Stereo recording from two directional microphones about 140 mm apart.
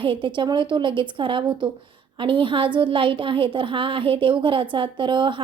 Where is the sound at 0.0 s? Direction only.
35° right (ahead or behind).